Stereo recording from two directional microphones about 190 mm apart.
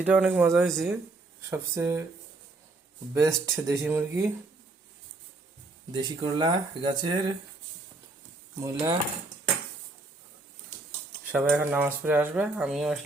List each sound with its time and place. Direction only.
0.0 s speech: 5° right (ahead or behind)
1.5 s speech: 15° right (ahead or behind)
3.2 s speech: 15° right (ahead or behind)
5.9 s speech: 25° right (ahead or behind)
8.6 s speech: 20° right (ahead or behind)
11.3 s speech: 10° right (ahead or behind)